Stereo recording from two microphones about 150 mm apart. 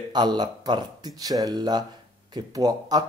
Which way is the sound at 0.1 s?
30° right (ahead or behind).